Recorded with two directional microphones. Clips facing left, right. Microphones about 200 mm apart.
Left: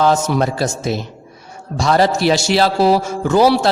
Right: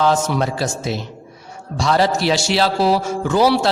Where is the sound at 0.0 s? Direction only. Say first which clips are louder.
Left 2 dB; 45° left (ahead or behind).